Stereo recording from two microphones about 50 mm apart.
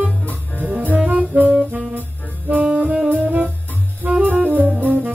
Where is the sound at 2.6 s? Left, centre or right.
Right.